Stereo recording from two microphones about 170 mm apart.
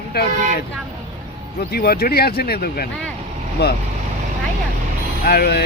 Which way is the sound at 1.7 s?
65° left (ahead or behind).